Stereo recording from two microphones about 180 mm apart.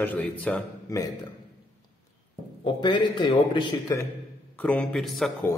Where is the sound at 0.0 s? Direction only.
10° left (ahead or behind).